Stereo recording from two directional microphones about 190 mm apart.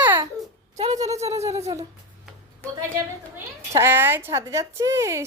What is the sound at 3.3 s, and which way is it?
A woman's voice, 10° right (ahead or behind).